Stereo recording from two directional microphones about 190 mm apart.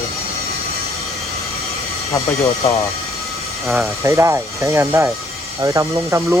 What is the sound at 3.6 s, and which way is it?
Speech, centre (ahead or behind).